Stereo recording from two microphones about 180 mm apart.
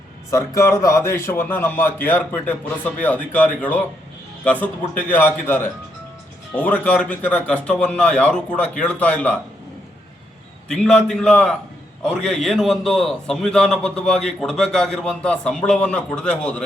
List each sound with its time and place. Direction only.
0.3 s a man's voice: 15° left (ahead or behind)
10.7 s a man's voice: 5° left (ahead or behind)